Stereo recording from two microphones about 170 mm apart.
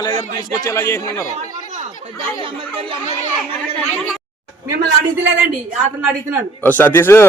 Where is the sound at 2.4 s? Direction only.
30° right (ahead or behind).